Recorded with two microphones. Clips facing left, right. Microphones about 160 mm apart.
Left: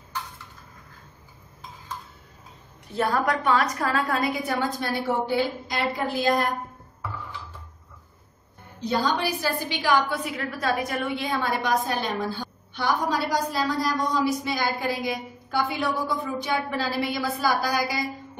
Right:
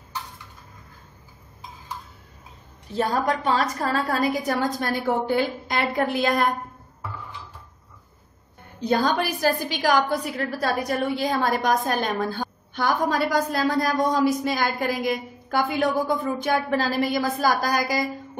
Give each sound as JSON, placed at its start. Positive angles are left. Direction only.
{"t": 3.0, "sound": "a woman's voice", "side_deg": -30}
{"t": 8.8, "sound": "a woman's voice", "side_deg": -50}